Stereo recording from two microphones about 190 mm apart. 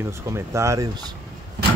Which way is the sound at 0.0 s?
15° right (ahead or behind).